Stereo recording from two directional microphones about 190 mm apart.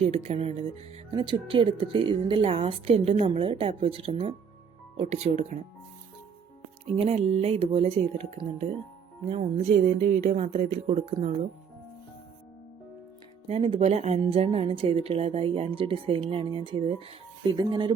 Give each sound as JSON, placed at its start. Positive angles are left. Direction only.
{"t": 0.0, "sound": "speech", "side_deg": -35}
{"t": 6.9, "sound": "speech", "side_deg": -30}
{"t": 13.5, "sound": "speech", "side_deg": -30}